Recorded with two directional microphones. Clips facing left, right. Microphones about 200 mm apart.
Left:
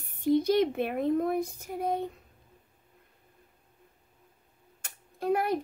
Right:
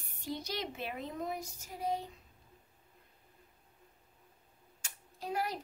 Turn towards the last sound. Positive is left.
turn(degrees=55)  # may be behind; listen again after turning